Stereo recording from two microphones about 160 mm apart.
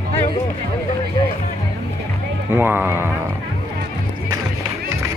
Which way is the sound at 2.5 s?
15° right (ahead or behind).